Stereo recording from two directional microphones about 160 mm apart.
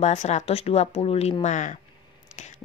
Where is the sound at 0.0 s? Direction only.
45° left (ahead or behind).